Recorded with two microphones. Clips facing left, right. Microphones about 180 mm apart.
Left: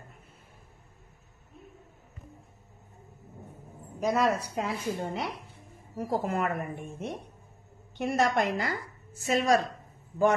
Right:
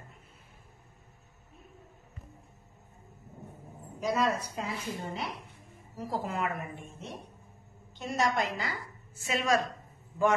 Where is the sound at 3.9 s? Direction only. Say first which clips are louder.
Left 3 dB; 55° left (ahead or behind).